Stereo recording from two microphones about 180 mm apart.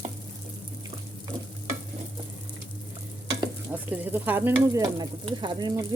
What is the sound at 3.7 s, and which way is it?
Sizzle, 10° right (ahead or behind).